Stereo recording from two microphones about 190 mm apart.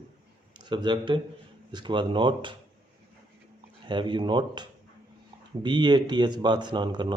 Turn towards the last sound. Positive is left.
turn(degrees=-25)  # may be behind; listen again after turning